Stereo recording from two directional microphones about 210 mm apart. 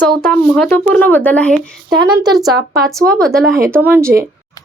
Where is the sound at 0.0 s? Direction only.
5° left (ahead or behind).